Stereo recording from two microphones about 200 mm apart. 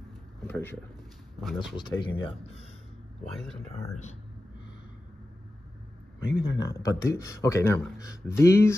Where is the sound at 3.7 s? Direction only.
35° left (ahead or behind).